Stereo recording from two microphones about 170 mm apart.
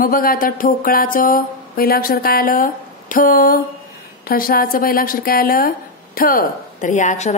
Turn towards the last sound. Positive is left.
turn(degrees=45)  # may be behind; listen again after turning